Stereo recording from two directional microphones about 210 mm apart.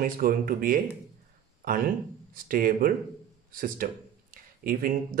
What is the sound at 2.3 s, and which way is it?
Speech, 40° right (ahead or behind).